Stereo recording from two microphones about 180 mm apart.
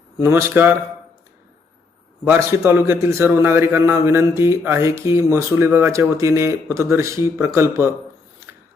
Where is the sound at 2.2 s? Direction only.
10° right (ahead or behind).